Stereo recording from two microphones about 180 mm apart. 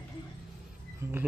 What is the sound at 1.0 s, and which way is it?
Speech, 15° right (ahead or behind).